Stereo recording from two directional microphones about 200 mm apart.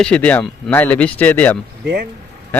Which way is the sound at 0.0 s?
5° left (ahead or behind).